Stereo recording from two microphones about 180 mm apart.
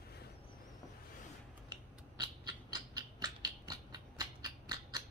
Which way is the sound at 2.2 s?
20° right (ahead or behind).